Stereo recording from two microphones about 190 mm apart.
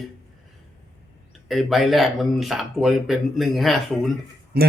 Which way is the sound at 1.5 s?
Centre (ahead or behind).